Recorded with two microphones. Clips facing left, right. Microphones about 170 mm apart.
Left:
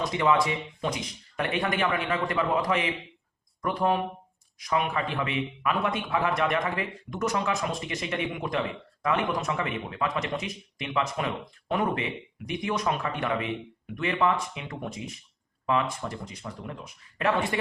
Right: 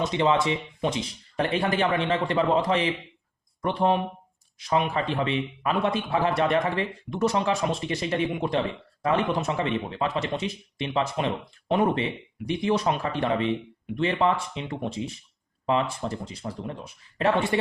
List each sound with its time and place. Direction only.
0.0 s a man's voice: 25° right (ahead or behind)